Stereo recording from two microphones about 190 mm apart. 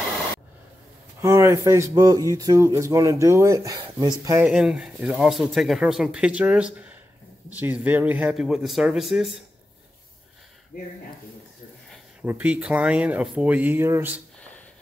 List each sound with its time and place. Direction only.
1.2 s speech: 15° right (ahead or behind)
4.5 s speech: 5° right (ahead or behind)
11.9 s speech: 5° right (ahead or behind)